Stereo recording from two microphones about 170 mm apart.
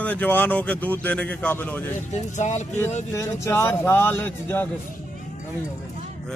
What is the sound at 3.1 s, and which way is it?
Speech, 15° left (ahead or behind).